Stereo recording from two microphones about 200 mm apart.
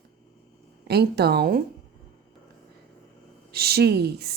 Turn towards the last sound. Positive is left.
turn(degrees=-50)  # may be behind; listen again after turning